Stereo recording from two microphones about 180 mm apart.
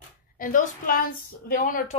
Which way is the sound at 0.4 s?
50° left (ahead or behind).